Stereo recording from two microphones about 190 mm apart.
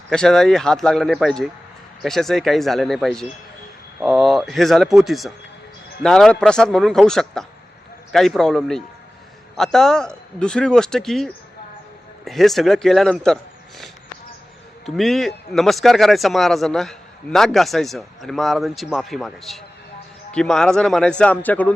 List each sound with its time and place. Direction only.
0.1 s a man's voice: 5° left (ahead or behind)